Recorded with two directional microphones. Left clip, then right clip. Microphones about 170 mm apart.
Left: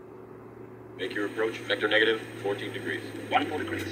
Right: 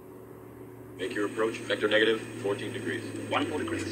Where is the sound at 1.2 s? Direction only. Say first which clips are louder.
Even; 50° left (ahead or behind).